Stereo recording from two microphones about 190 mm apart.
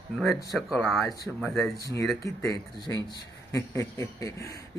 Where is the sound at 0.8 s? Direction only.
Centre (ahead or behind).